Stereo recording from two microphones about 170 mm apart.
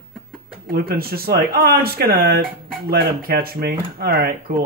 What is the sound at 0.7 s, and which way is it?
Speech, 60° right (ahead or behind).